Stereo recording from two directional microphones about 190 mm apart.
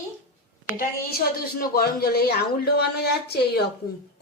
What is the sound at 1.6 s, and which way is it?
A man's voice, 55° left (ahead or behind).